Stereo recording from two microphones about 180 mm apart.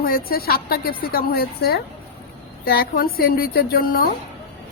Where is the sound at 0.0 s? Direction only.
55° left (ahead or behind).